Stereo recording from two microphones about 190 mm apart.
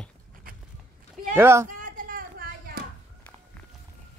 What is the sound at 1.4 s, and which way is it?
Speech, 15° right (ahead or behind).